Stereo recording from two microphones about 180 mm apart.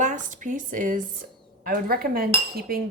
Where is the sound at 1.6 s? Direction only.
55° right (ahead or behind).